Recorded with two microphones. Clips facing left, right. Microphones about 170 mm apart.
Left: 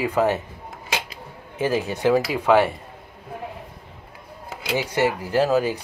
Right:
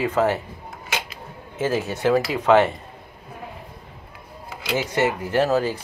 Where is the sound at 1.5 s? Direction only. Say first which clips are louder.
Left 1 dB; 15° left (ahead or behind).